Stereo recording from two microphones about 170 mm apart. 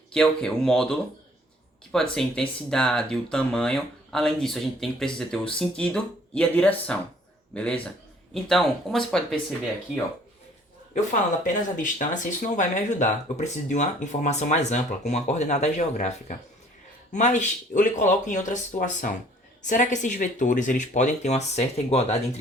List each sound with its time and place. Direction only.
0.1 s speech: 5° left (ahead or behind)
11.1 s speech: 50° left (ahead or behind)